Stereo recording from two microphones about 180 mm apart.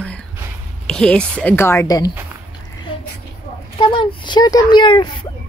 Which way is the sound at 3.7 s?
25° left (ahead or behind).